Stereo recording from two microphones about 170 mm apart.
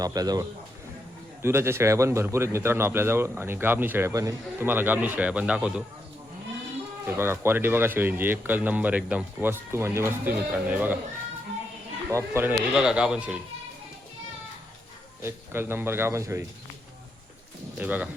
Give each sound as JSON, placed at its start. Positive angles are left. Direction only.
{"t": 0.0, "sound": "a man's voice", "side_deg": -20}
{"t": 7.2, "sound": "a man's voice", "side_deg": -15}
{"t": 12.0, "sound": "a man's voice", "side_deg": -15}
{"t": 15.2, "sound": "a man's voice", "side_deg": -15}
{"t": 17.7, "sound": "a man's voice", "side_deg": -10}